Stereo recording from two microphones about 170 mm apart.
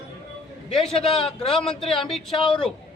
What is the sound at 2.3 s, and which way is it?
Speech, 30° left (ahead or behind).